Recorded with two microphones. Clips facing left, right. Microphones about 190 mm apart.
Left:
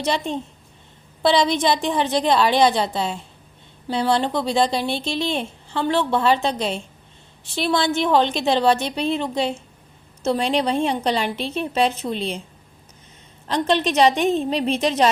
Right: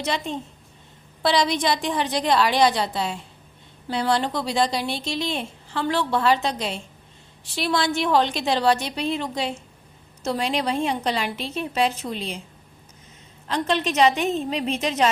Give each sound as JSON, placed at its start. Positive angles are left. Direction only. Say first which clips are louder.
{"t": 1.2, "sound": "a woman's voice", "louder": "left 3 dB", "side_deg": 25}
{"t": 13.8, "sound": "a woman's voice", "louder": "left 1 dB", "side_deg": 35}